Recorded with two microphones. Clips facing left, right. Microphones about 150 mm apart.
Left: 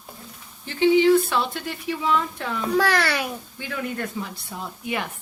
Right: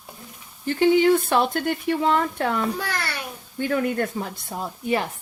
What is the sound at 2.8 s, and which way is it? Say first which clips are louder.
Speech: left 8 dB; 90° left.